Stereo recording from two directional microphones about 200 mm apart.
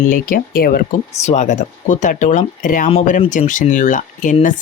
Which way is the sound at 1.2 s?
35° left (ahead or behind).